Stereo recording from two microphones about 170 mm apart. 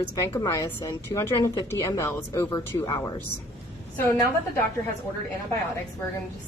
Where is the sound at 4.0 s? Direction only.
15° left (ahead or behind).